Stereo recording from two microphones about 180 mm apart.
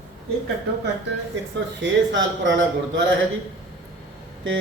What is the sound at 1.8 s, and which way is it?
A man's voice, 90° right.